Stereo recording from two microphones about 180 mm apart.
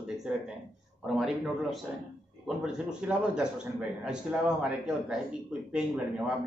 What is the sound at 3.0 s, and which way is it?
A man's voice, 5° right (ahead or behind).